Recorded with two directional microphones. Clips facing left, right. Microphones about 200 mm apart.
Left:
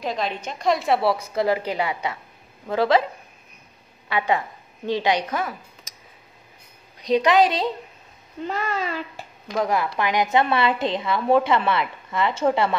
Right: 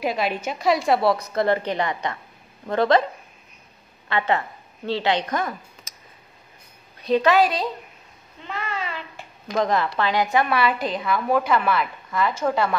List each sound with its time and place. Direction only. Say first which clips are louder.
0.0 s a woman's voice: right 3 dB; 10° right (ahead or behind)
4.1 s a woman's voice: even; 10° left (ahead or behind)
7.0 s a woman's voice: even; 15° left (ahead or behind)
8.5 s babbling: left 4 dB; 40° left (ahead or behind)
9.5 s a woman's voice: right 1 dB; 10° left (ahead or behind); by 12.7 s 25° left (ahead or behind)